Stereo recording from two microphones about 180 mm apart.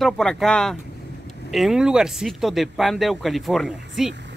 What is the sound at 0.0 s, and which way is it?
Speech, centre (ahead or behind).